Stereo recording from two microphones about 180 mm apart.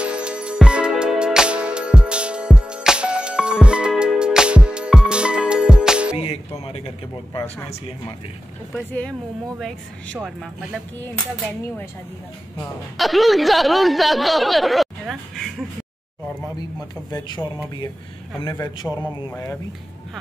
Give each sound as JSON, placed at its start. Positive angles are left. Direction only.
{"t": 0.0, "sound": "music", "side_deg": -5}
{"t": 6.1, "sound": "music", "side_deg": 35}
{"t": 9.6, "sound": "speech", "side_deg": 5}
{"t": 12.9, "sound": "speech", "side_deg": 0}
{"t": 17.1, "sound": "speech", "side_deg": 20}
{"t": 19.3, "sound": "speech", "side_deg": 10}